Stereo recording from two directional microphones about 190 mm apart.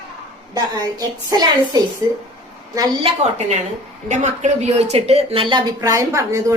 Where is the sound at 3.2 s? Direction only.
35° right (ahead or behind).